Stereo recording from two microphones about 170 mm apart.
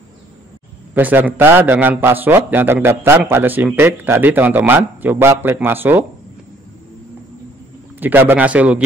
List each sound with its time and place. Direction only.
0.9 s a man's voice: 10° right (ahead or behind)
8.0 s a man's voice: 10° right (ahead or behind)